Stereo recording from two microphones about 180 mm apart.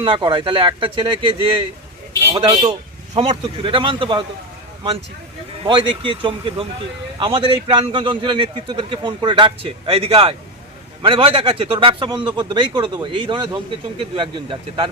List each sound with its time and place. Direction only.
0.0 s speech: 25° right (ahead or behind)
5.6 s speech: 30° right (ahead or behind)